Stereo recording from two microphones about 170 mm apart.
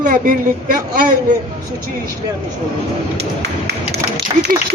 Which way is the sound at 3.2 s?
80° right.